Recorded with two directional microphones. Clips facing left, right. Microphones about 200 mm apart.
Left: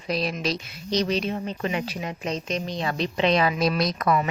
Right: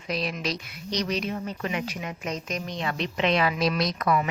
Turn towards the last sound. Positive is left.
turn(degrees=35)  # may be behind; listen again after turning